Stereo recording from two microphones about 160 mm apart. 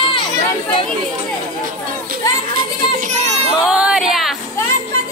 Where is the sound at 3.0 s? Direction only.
45° right (ahead or behind).